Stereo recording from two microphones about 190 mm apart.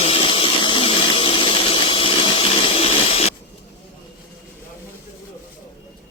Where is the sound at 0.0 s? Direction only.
30° left (ahead or behind).